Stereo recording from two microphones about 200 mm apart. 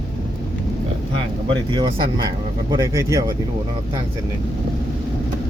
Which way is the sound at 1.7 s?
20° right (ahead or behind).